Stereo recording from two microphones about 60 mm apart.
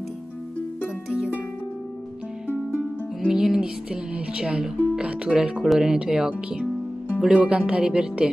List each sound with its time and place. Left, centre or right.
3.3 s speech: centre